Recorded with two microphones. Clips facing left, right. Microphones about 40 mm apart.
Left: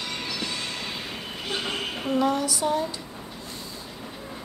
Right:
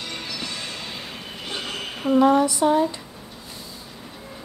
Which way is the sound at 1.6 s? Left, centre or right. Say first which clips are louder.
Left 1 dB; centre.